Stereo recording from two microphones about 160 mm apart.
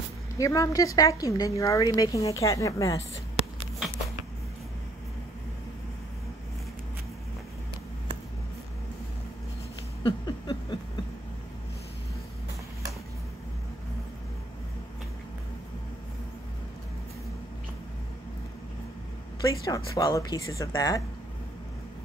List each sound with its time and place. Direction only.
0.4 s a woman's voice: 20° left (ahead or behind)
10.0 s a sound: 30° left (ahead or behind)
19.4 s a woman's voice: 20° left (ahead or behind)